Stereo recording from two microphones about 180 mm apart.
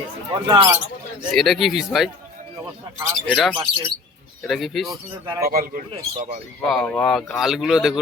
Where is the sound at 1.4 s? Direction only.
Centre (ahead or behind).